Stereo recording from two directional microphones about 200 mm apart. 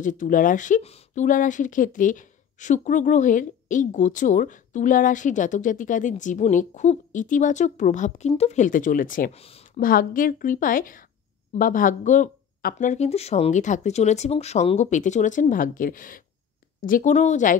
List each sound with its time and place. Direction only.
0.0 s speech: 40° left (ahead or behind)
9.4 s speech: 30° left (ahead or behind)
9.8 s a woman's voice: 45° left (ahead or behind)